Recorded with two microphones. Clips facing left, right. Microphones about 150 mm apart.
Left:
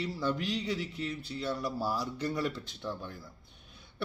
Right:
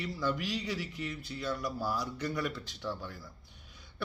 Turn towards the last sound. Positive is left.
turn(degrees=20)  # may be behind; listen again after turning